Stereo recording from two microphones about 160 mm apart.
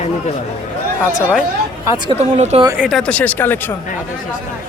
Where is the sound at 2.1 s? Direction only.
45° right (ahead or behind).